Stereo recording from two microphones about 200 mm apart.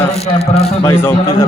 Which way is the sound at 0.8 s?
10° left (ahead or behind).